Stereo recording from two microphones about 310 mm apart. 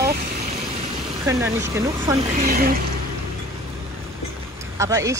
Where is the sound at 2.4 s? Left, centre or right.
Right.